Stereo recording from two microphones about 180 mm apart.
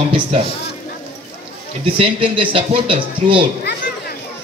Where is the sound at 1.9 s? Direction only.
30° right (ahead or behind).